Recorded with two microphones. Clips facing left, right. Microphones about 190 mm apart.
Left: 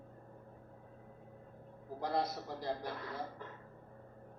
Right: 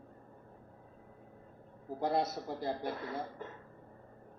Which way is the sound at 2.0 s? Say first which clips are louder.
Right 4 dB; 25° right (ahead or behind).